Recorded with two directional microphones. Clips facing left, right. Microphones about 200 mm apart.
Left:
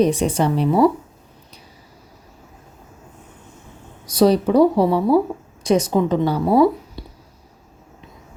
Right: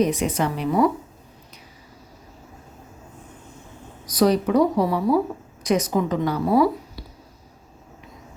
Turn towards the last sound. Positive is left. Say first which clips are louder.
# left 4 dB
turn(degrees=25)  # may be behind; listen again after turning